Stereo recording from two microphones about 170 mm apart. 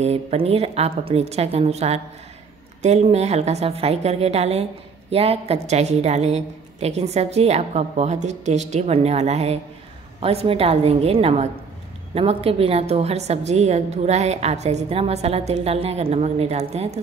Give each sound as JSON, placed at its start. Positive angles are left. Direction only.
{"t": 0.0, "sound": "a woman's voice", "side_deg": -40}